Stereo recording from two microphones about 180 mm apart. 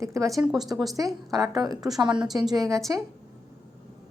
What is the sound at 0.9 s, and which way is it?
Speech, 20° right (ahead or behind).